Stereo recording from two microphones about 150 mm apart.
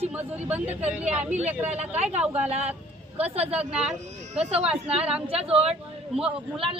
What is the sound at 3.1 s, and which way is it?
Speech, 45° right (ahead or behind).